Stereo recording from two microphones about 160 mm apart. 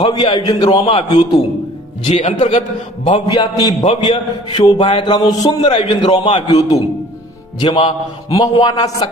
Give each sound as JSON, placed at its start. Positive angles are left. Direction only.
{"t": 0.0, "sound": "a man's voice", "side_deg": 35}
{"t": 2.0, "sound": "a man's voice", "side_deg": 50}
{"t": 3.1, "sound": "a man's voice", "side_deg": 25}
{"t": 6.5, "sound": "a man's voice", "side_deg": 25}